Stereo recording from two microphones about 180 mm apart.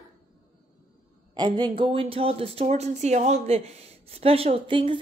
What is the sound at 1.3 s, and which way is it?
Speech, 25° right (ahead or behind).